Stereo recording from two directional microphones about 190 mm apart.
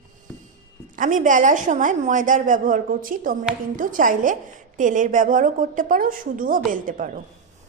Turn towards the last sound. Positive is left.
turn(degrees=-45)  # may be behind; listen again after turning